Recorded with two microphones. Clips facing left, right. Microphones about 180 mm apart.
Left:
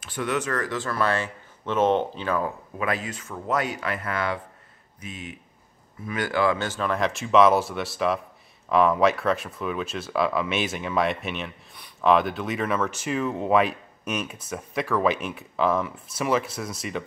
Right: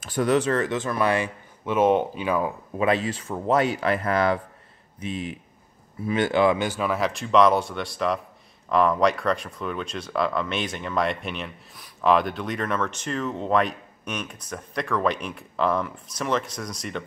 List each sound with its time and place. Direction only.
0.0 s speech: 40° right (ahead or behind); by 2.5 s 10° right (ahead or behind)
2.8 s speech: 25° right (ahead or behind); by 17.0 s 5° left (ahead or behind)